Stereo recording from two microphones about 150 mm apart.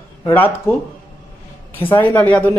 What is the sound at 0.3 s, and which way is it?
Speech, 10° left (ahead or behind).